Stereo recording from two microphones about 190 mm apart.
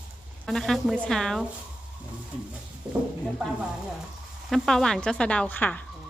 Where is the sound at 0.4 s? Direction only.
Centre (ahead or behind).